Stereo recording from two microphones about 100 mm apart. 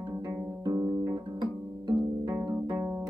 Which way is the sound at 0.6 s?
40° right (ahead or behind).